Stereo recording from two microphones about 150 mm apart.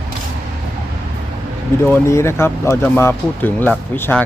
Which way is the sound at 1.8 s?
15° left (ahead or behind).